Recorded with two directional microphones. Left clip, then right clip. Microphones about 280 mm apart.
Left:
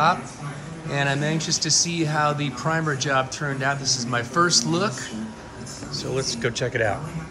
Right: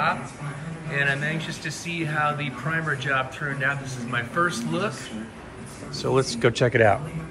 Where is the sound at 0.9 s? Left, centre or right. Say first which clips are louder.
Even; centre.